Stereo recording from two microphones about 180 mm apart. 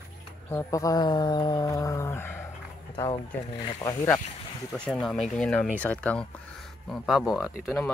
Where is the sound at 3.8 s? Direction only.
15° left (ahead or behind).